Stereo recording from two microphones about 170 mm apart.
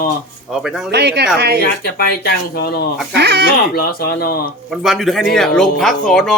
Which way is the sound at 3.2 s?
75° right (ahead or behind).